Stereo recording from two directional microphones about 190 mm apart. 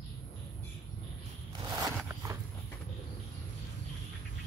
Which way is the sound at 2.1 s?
15° right (ahead or behind).